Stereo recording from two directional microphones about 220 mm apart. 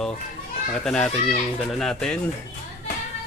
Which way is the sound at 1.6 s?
Centre (ahead or behind).